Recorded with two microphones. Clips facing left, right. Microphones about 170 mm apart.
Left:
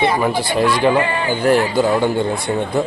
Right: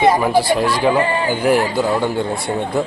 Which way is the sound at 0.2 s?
5° right (ahead or behind).